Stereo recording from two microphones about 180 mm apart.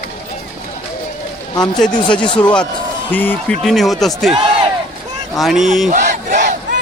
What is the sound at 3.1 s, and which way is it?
Speech, 10° left (ahead or behind).